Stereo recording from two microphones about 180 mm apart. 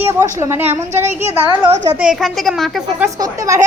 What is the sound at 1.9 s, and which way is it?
A woman's voice, 5° right (ahead or behind).